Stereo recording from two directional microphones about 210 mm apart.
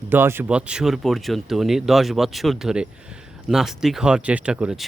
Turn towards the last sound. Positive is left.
turn(degrees=-5)  # may be behind; listen again after turning